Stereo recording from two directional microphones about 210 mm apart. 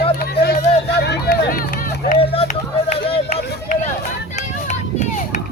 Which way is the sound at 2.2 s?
25° left (ahead or behind).